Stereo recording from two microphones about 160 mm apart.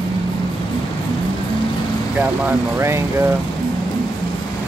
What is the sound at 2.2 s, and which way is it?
Speech, 15° right (ahead or behind).